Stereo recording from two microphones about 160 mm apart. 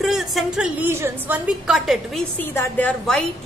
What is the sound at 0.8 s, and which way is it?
A woman's voice, 15° right (ahead or behind).